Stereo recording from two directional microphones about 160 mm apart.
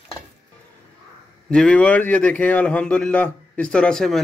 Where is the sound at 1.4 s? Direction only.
5° left (ahead or behind).